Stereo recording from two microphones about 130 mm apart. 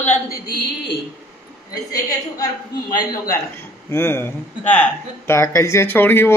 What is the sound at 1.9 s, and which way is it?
Speech, 30° left (ahead or behind).